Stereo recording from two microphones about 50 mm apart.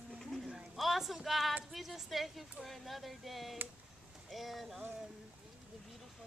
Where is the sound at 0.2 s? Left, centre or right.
Centre.